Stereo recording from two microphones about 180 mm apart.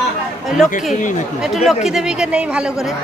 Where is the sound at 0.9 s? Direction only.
45° left (ahead or behind).